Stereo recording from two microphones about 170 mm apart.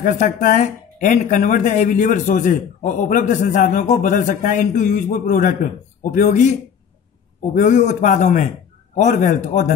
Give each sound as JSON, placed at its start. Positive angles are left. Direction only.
{"t": 0.0, "sound": "speech", "side_deg": 50}
{"t": 7.5, "sound": "speech", "side_deg": 45}